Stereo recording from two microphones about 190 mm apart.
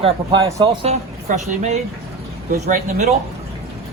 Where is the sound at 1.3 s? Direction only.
40° right (ahead or behind).